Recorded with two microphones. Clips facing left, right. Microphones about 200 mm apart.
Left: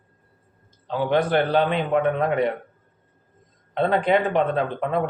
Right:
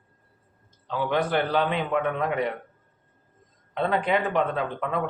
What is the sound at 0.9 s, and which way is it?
Speech, 25° left (ahead or behind).